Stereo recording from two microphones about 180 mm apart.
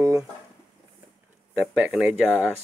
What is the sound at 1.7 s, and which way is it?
Speech, 5° right (ahead or behind).